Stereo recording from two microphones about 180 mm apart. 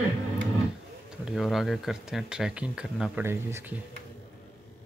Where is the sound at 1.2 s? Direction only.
Centre (ahead or behind).